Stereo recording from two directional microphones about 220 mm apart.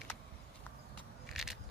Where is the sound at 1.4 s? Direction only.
Centre (ahead or behind).